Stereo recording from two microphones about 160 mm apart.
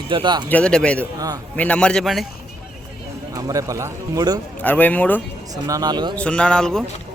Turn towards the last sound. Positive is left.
turn(degrees=5)  # may be behind; listen again after turning